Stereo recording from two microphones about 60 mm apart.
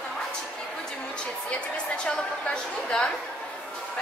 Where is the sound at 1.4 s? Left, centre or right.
Centre.